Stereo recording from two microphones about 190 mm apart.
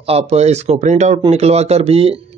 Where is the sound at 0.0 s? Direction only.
35° right (ahead or behind).